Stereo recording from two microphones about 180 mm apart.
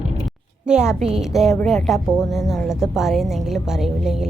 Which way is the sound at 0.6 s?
5° right (ahead or behind).